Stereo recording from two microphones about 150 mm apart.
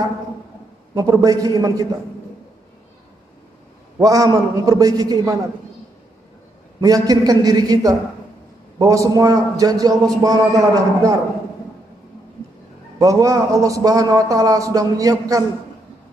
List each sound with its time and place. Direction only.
0.9 s a man's voice: 25° right (ahead or behind)
4.0 s a man's voice: 20° right (ahead or behind)
6.8 s a man's voice: 25° right (ahead or behind)
13.0 s a man's voice: 20° right (ahead or behind)